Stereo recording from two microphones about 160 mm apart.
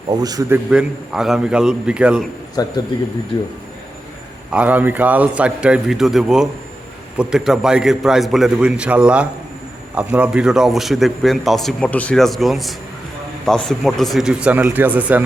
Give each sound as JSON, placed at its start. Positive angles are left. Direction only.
{"t": 0.1, "sound": "a man's voice", "side_deg": -25}
{"t": 0.7, "sound": "a man's voice", "side_deg": -5}
{"t": 2.6, "sound": "a man's voice", "side_deg": 25}
{"t": 4.5, "sound": "a man's voice", "side_deg": -10}